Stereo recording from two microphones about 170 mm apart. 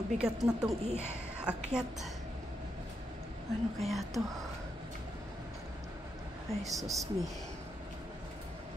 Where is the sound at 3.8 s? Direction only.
Centre (ahead or behind).